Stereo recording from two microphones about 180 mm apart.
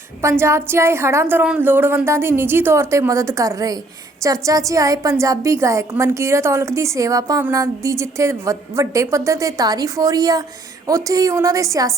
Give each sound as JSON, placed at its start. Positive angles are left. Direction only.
{"t": 0.2, "sound": "a woman's voice", "side_deg": -15}